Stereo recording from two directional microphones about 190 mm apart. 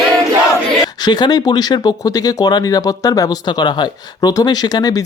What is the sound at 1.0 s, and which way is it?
Speech, 20° left (ahead or behind).